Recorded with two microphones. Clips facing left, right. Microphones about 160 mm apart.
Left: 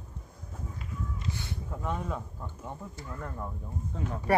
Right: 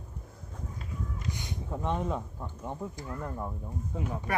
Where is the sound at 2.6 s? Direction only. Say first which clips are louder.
Right 5 dB; 15° right (ahead or behind).